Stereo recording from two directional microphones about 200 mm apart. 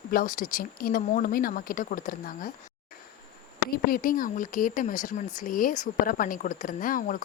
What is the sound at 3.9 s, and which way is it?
A woman's voice, 45° left (ahead or behind).